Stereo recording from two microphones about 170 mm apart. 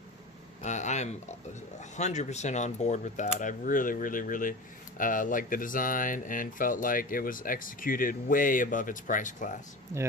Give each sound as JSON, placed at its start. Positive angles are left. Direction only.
{"t": 0.6, "sound": "speech", "side_deg": 45}